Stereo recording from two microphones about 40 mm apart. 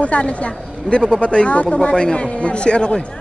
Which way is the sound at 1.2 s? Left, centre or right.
Left.